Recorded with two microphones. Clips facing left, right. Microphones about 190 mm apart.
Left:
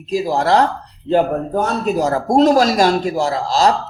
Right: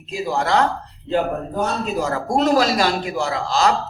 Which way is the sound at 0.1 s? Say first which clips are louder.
Left 5 dB; 40° left (ahead or behind).